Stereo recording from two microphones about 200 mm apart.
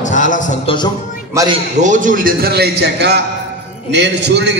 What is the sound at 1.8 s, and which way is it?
A man's voice, 40° right (ahead or behind).